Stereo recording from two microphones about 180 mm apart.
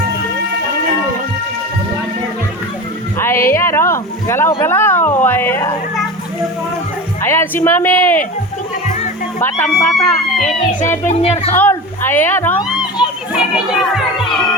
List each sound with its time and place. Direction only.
3.2 s music: 15° left (ahead or behind)
3.5 s a sound: 15° left (ahead or behind)
4.6 s speech: 10° left (ahead or behind)
7.2 s speech: 15° left (ahead or behind)
9.4 s speech: 10° left (ahead or behind)
11.1 s speech: 35° left (ahead or behind)
11.5 s speech: 10° left (ahead or behind)
12.6 s a child's voice: 5° right (ahead or behind)